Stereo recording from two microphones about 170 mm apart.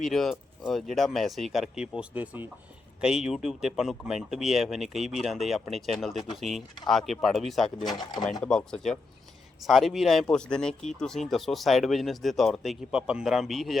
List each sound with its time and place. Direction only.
0.0 s speech: centre (ahead or behind)
7.9 s speech: 25° left (ahead or behind)
8.4 s speech: 5° left (ahead or behind)